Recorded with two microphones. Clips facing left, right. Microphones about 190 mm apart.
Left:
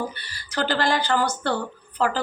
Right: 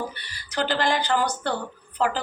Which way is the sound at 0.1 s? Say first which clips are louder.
Left 1 dB; 20° right (ahead or behind).